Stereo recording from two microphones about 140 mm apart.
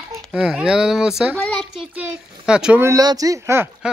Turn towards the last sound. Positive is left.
turn(degrees=-20)  # may be behind; listen again after turning